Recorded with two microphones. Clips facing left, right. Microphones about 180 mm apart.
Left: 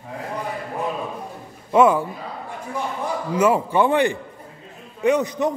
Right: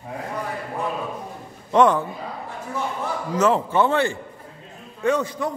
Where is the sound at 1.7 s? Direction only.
5° left (ahead or behind).